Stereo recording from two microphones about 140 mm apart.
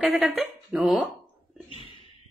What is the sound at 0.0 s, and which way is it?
A woman's voice, 10° right (ahead or behind).